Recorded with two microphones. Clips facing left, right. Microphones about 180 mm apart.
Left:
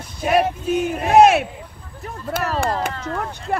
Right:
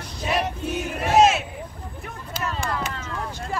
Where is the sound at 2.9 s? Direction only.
45° left (ahead or behind).